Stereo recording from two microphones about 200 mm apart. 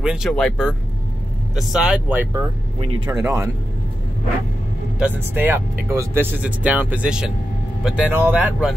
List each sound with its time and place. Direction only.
0.0 s speech: 5° right (ahead or behind)
4.9 s speech: 10° right (ahead or behind)